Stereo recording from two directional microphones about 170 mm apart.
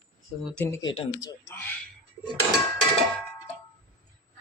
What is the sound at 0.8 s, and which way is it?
Speech, 35° left (ahead or behind).